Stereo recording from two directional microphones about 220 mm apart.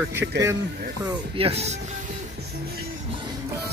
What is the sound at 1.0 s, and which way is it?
Speech, 25° right (ahead or behind).